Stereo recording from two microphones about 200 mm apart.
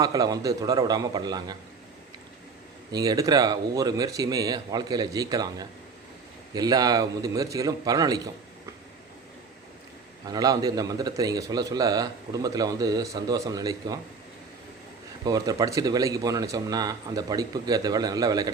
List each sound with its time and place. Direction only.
0.0 s a man's voice: 20° right (ahead or behind)
2.9 s a man's voice: 20° right (ahead or behind)
10.2 s a man's voice: 20° right (ahead or behind)
15.2 s a man's voice: 20° right (ahead or behind)